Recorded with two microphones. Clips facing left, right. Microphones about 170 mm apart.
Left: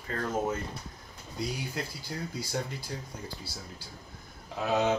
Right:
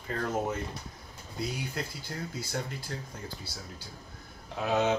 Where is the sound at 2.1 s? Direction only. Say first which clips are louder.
Left 2 dB; 5° left (ahead or behind).